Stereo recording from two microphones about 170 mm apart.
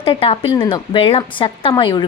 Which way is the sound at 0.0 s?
35° left (ahead or behind).